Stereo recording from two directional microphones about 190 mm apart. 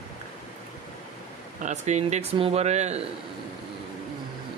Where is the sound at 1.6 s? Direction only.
35° right (ahead or behind).